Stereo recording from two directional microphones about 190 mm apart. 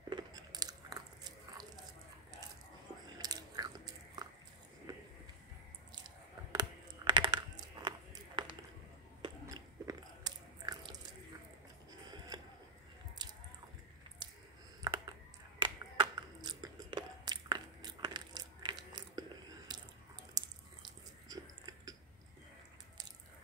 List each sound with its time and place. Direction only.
0.1 s chewing: 20° right (ahead or behind)
3.2 s biting: 20° right (ahead or behind)
4.9 s a sound: 20° right (ahead or behind)
5.9 s computer keyboard: 20° right (ahead or behind)
9.2 s biting: 20° right (ahead or behind)
13.2 s squish: 20° right (ahead or behind)
14.8 s computer keyboard: 20° right (ahead or behind)
15.6 s biting: 25° right (ahead or behind)
19.7 s a sound: 20° right (ahead or behind)